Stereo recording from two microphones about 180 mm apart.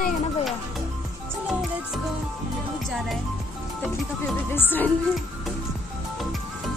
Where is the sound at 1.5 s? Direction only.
Centre (ahead or behind).